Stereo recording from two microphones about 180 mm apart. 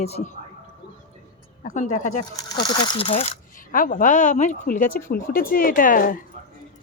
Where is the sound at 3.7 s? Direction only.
50° left (ahead or behind).